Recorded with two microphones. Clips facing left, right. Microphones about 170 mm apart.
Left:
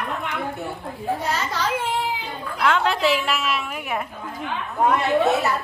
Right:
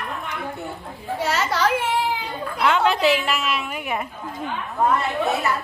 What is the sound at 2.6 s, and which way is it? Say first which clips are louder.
A woman's voice: right 2 dB; centre (ahead or behind).